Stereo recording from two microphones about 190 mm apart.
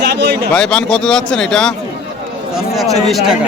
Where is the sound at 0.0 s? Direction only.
60° right (ahead or behind).